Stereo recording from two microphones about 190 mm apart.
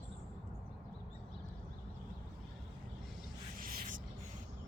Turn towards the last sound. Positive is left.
turn(degrees=-45)  # may be behind; listen again after turning